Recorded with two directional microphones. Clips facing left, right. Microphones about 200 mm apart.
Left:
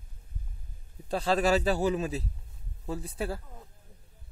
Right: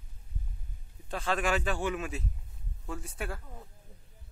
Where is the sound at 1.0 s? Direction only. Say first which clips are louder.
Left 5 dB; 35° left (ahead or behind).